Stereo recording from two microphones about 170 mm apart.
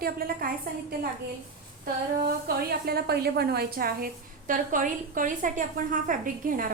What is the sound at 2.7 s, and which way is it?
A woman's voice, 65° right (ahead or behind).